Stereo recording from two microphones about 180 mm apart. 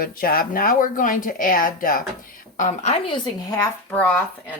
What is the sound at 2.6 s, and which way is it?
A woman's voice, 40° left (ahead or behind).